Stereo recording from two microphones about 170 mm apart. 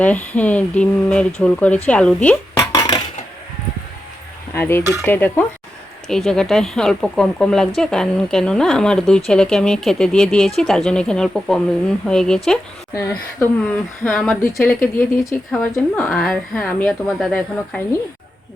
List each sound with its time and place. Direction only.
0.0 s speech: 10° left (ahead or behind)
2.7 s cutlery: 25° left (ahead or behind)
4.5 s a woman's voice: 10° left (ahead or behind)
14.0 s speech: 5° left (ahead or behind)